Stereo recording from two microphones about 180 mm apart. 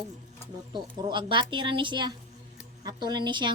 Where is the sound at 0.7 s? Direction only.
25° right (ahead or behind).